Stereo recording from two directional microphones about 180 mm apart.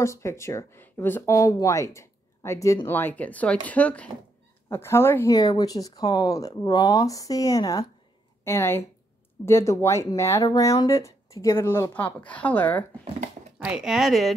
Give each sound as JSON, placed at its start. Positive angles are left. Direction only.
{"t": 0.0, "sound": "speech", "side_deg": 15}
{"t": 13.6, "sound": "speech", "side_deg": -5}